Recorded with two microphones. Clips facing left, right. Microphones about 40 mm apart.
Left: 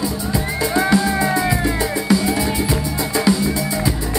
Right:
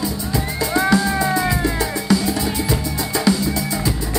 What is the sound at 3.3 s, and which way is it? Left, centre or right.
Music, left.